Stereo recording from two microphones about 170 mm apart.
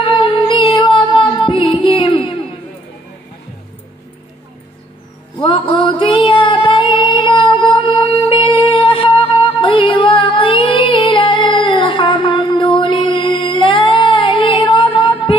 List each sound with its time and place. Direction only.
0.9 s music: 30° left (ahead or behind)
5.4 s female singing: 30° left (ahead or behind)